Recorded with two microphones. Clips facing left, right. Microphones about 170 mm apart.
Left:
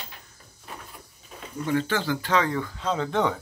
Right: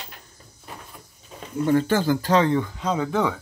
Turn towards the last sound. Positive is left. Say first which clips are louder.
# right 2 dB
turn(degrees=-5)  # may be behind; listen again after turning